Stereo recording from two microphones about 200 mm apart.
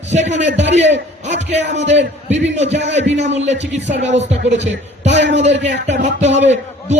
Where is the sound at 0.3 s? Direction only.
60° right (ahead or behind).